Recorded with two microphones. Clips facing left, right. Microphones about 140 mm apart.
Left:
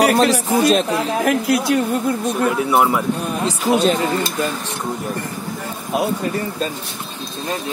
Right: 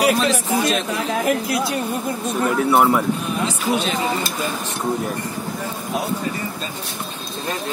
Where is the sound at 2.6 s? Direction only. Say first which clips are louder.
Right 3 dB; 5° left (ahead or behind).